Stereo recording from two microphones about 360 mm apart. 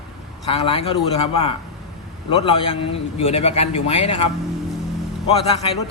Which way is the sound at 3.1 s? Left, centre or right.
Centre.